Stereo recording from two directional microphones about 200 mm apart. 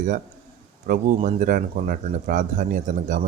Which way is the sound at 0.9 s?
40° right (ahead or behind).